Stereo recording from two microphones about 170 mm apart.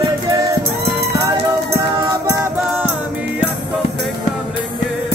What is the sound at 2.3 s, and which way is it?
Music, 15° right (ahead or behind).